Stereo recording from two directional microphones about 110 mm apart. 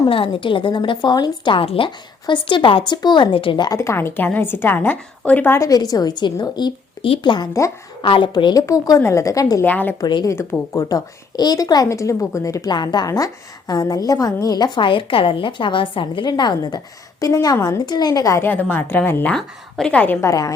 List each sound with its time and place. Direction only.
0.1 s a woman's voice: 50° left (ahead or behind)
1.6 s a woman's voice: 55° left (ahead or behind)
3.7 s a woman's voice: 25° left (ahead or behind)
5.5 s a woman's voice: 30° left (ahead or behind)
8.0 s a woman's voice: 50° left (ahead or behind); by 9.6 s 30° left (ahead or behind)
9.6 s speech: 15° left (ahead or behind)
10.0 s a woman's voice: 45° left (ahead or behind)
10.8 s a woman's voice: 35° left (ahead or behind)
18.4 s speech: 15° left (ahead or behind)
19.4 s speech: 5° left (ahead or behind)
20.2 s a woman's voice: 30° left (ahead or behind)